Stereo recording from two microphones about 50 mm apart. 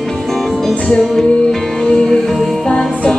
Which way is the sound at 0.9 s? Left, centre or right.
Centre.